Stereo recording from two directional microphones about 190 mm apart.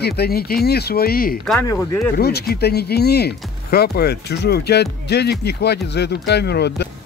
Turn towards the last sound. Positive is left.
turn(degrees=60)  # may be behind; listen again after turning